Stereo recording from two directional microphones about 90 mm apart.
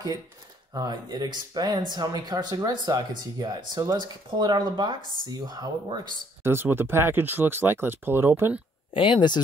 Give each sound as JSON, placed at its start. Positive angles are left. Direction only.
{"t": 0.7, "sound": "speech", "side_deg": -50}
{"t": 6.4, "sound": "speech", "side_deg": -25}
{"t": 8.9, "sound": "speech", "side_deg": 65}